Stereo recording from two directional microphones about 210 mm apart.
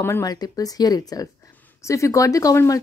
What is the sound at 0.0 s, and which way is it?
Speech, 15° left (ahead or behind).